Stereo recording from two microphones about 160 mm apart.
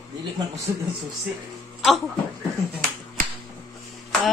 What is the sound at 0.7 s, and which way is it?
Speech, 20° right (ahead or behind).